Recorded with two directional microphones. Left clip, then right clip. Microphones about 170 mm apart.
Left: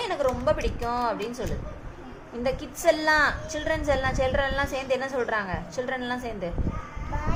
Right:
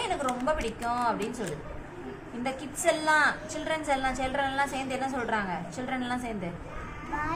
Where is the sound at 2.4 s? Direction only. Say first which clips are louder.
Left 5 dB; 45° left (ahead or behind).